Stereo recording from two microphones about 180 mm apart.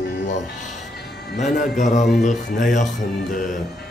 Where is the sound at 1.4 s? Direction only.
45° left (ahead or behind).